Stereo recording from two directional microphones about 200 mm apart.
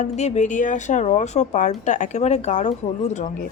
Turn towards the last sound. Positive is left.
turn(degrees=35)  # may be behind; listen again after turning